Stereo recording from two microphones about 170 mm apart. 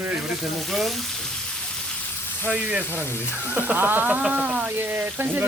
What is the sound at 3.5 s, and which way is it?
Speech, 10° right (ahead or behind).